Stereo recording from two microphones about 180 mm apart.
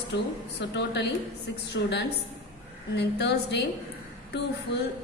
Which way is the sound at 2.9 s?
70° left (ahead or behind).